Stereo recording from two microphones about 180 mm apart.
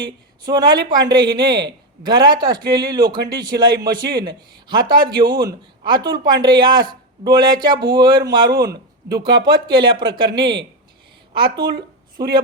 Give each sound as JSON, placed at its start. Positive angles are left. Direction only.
{"t": 0.4, "sound": "a man's voice", "side_deg": -25}
{"t": 12.2, "sound": "a woman's voice", "side_deg": -65}